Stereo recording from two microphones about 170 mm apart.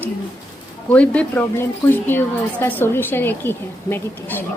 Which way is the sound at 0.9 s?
5° left (ahead or behind).